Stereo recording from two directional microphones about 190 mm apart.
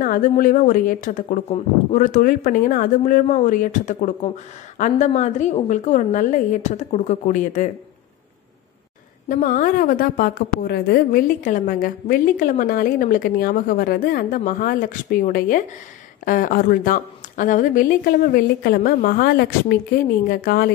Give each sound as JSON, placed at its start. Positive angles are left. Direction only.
{"t": 0.0, "sound": "a woman's voice", "side_deg": 45}
{"t": 9.3, "sound": "a woman's voice", "side_deg": 45}